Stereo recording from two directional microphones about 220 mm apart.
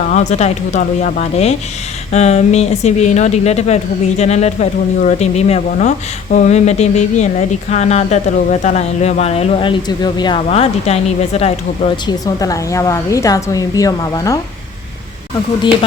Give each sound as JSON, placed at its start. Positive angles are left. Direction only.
{"t": 0.1, "sound": "speech", "side_deg": 30}
{"t": 12.2, "sound": "a woman's voice", "side_deg": 15}